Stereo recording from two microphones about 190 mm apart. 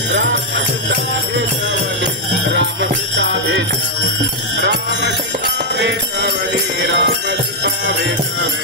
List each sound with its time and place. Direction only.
2.5 s jingle bell: 70° right (ahead or behind)
4.6 s music: 65° right (ahead or behind)
6.9 s music: 65° right (ahead or behind)